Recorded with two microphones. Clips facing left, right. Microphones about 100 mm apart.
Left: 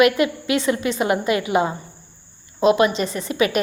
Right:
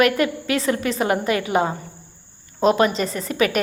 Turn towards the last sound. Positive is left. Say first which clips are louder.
# even
turn(degrees=-40)  # may be behind; listen again after turning